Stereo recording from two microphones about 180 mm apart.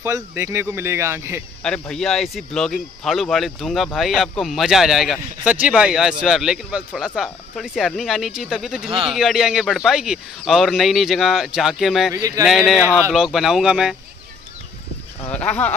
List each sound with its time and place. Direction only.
0.0 s speech: 15° right (ahead or behind)
1.6 s speech: 5° left (ahead or behind)
12.1 s speech: 20° right (ahead or behind)
12.4 s speech: centre (ahead or behind)
12.8 s speech: 10° right (ahead or behind)
13.1 s speech: centre (ahead or behind)
15.3 s speech: 10° left (ahead or behind)